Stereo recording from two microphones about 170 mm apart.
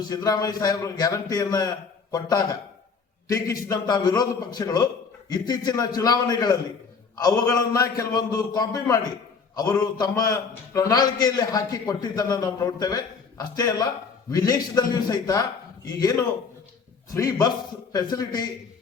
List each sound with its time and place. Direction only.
0.0 s a man's voice: 20° left (ahead or behind)